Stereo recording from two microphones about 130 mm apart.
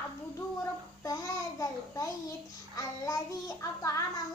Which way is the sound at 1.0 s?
25° left (ahead or behind).